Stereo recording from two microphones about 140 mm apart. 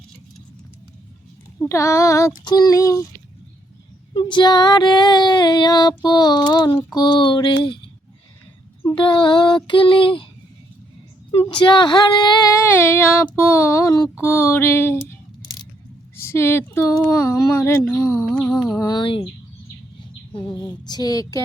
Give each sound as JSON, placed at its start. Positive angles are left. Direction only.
{"t": 1.5, "sound": "speech", "side_deg": 20}
{"t": 4.1, "sound": "female singing", "side_deg": 35}
{"t": 6.0, "sound": "speech", "side_deg": 30}
{"t": 6.7, "sound": "female singing", "side_deg": 30}
{"t": 9.0, "sound": "female singing", "side_deg": 35}
{"t": 11.3, "sound": "female singing", "side_deg": 40}
{"t": 12.6, "sound": "child singing", "side_deg": 15}
{"t": 16.1, "sound": "female singing", "side_deg": 20}
{"t": 17.1, "sound": "speech", "side_deg": 20}
{"t": 18.8, "sound": "female singing", "side_deg": 30}
{"t": 20.3, "sound": "speech", "side_deg": 30}